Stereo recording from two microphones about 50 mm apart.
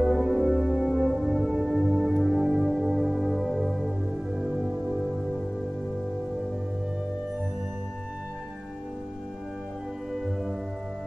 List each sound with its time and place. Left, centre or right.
0.1 s music: centre
4.4 s music: centre
10.1 s music: centre